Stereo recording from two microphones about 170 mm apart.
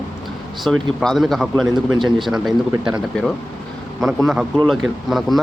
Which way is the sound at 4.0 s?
Centre (ahead or behind).